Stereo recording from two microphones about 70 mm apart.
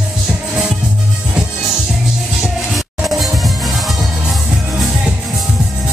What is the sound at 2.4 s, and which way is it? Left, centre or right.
Music, centre.